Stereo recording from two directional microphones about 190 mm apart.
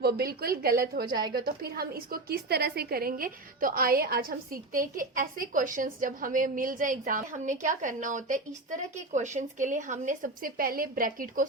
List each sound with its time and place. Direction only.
0.0 s a woman's voice: 55° right (ahead or behind)